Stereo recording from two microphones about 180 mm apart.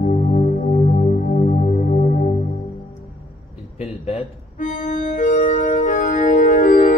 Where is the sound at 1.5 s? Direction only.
45° left (ahead or behind).